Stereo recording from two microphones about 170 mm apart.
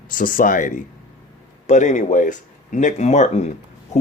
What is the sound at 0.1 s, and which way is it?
Speech, 55° left (ahead or behind).